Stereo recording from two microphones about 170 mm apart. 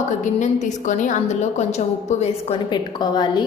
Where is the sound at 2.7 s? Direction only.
25° left (ahead or behind).